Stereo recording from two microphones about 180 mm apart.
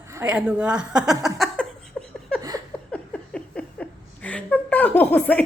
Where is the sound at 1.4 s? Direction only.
5° left (ahead or behind).